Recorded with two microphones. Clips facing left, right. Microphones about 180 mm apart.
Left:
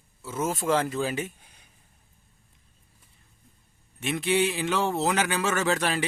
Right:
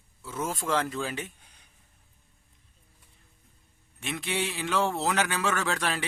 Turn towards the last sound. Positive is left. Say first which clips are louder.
# left 4 dB
turn(degrees=5)  # may be behind; listen again after turning